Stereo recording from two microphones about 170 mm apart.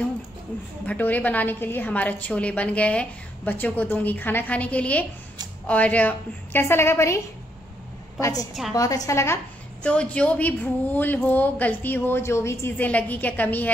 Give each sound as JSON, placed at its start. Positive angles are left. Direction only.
{"t": 0.8, "sound": "a woman's voice", "side_deg": 10}
{"t": 8.2, "sound": "a woman's voice", "side_deg": 20}